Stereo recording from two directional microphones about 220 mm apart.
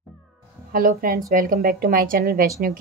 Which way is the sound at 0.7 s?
40° right (ahead or behind).